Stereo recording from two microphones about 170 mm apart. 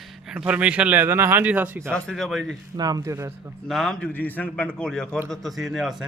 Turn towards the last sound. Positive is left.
turn(degrees=0)  # may be behind; listen again after turning